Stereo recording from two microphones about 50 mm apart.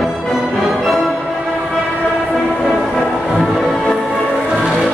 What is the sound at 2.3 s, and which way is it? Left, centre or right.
Train, centre.